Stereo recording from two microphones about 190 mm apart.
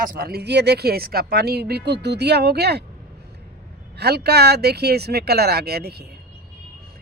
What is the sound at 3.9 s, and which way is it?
Speech, 60° right (ahead or behind).